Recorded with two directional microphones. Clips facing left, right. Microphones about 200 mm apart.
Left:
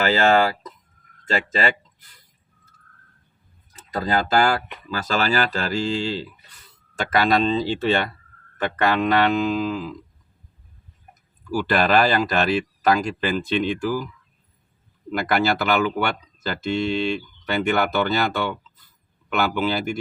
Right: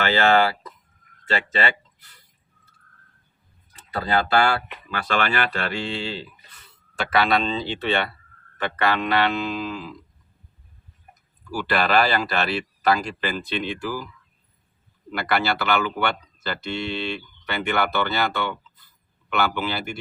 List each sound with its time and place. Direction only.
0.0 s speech: 40° left (ahead or behind)
3.9 s speech: 40° left (ahead or behind)
11.5 s speech: 45° left (ahead or behind)
15.1 s speech: 45° left (ahead or behind)